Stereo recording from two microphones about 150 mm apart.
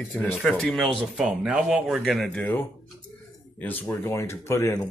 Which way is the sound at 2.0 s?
5° left (ahead or behind).